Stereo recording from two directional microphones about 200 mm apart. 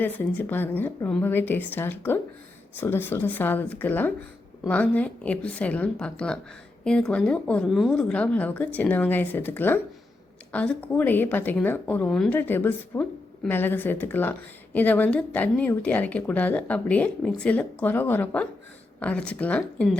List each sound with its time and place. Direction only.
0.0 s a woman's voice: 10° left (ahead or behind)